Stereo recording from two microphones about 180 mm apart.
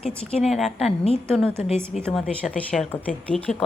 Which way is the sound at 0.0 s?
35° left (ahead or behind).